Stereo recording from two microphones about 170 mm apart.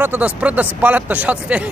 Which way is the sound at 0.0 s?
10° right (ahead or behind).